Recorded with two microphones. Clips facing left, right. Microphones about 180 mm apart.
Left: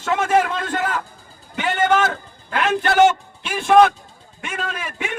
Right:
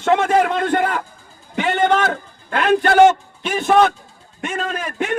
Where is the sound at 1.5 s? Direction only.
30° right (ahead or behind).